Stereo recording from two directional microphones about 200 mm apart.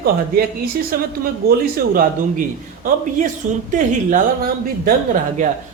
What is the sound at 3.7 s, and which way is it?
Speech, 40° right (ahead or behind).